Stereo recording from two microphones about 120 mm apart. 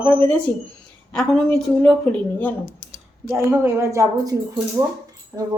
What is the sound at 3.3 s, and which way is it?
A woman's voice, 15° right (ahead or behind).